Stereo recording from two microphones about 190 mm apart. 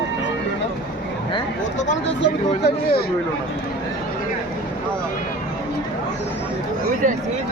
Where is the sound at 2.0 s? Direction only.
65° left (ahead or behind).